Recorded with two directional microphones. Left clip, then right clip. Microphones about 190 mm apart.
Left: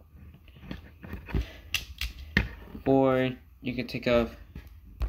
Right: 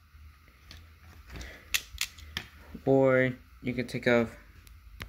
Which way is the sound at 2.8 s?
35° right (ahead or behind).